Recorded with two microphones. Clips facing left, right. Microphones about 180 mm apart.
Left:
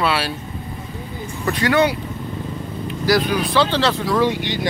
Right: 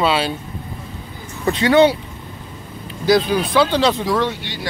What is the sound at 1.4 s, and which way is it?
Speech, 25° right (ahead or behind).